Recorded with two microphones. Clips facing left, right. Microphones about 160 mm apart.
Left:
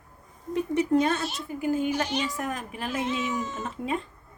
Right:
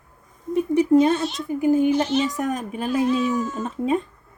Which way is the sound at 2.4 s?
20° right (ahead or behind).